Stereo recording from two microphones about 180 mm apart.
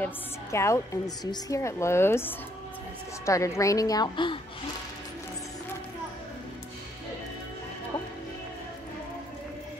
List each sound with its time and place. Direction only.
0.0 s a woman's voice: 15° left (ahead or behind)